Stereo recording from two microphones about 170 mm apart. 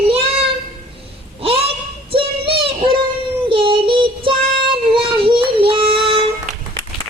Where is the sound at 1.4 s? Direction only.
35° right (ahead or behind).